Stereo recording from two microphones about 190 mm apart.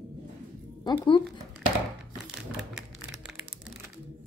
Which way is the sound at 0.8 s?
20° left (ahead or behind).